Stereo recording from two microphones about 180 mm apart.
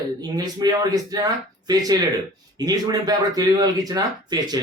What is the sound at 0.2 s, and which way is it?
Speech, 20° right (ahead or behind).